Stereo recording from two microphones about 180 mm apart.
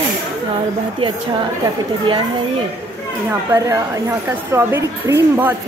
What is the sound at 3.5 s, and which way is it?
A woman's voice, 15° right (ahead or behind).